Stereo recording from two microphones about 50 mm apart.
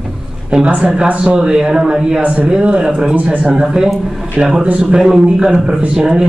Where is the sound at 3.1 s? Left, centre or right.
Right.